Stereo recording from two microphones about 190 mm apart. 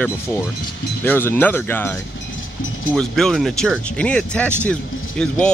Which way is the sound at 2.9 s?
Centre (ahead or behind).